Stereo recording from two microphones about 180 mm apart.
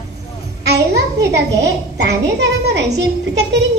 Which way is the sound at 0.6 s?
65° right (ahead or behind).